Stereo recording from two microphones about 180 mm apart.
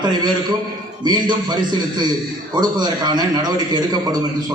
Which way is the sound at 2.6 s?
25° right (ahead or behind).